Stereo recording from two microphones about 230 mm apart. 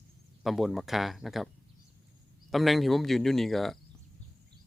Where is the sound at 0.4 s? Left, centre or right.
Centre.